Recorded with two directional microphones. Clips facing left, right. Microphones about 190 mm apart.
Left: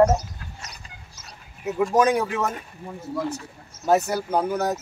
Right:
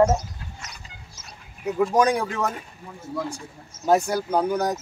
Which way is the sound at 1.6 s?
5° left (ahead or behind).